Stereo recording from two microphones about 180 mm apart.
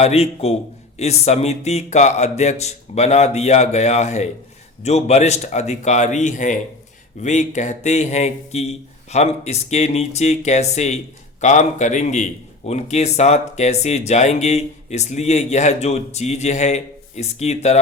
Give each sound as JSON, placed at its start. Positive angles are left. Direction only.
{"t": 0.0, "sound": "speech", "side_deg": 35}